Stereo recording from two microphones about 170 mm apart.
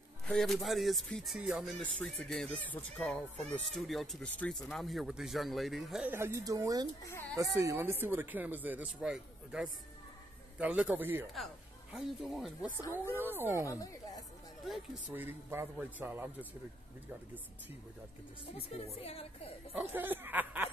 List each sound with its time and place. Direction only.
0.3 s speech: centre (ahead or behind)
1.8 s speech: 5° left (ahead or behind)
6.1 s speech: 15° right (ahead or behind)
7.0 s speech: 15° left (ahead or behind)
7.3 s speech: 15° right (ahead or behind); by 12.5 s centre (ahead or behind)
13.1 s speech: 10° right (ahead or behind)
13.7 s speech: 20° left (ahead or behind)
14.7 s speech: 10° right (ahead or behind)
18.9 s a woman's voice: 35° left (ahead or behind)
19.7 s speech: 10° right (ahead or behind)